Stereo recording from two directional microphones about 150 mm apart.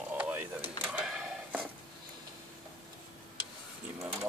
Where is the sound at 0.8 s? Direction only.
5° right (ahead or behind).